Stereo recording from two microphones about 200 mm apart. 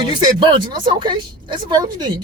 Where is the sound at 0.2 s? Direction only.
20° right (ahead or behind).